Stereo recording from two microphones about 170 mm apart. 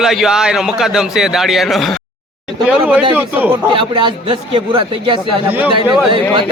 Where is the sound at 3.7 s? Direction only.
30° right (ahead or behind).